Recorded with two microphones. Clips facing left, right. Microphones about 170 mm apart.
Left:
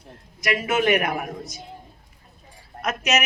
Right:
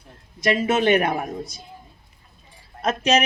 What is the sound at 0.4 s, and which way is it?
Speech, 30° right (ahead or behind).